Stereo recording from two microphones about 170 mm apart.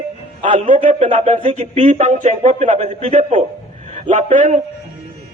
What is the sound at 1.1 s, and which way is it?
A man's voice, 40° right (ahead or behind).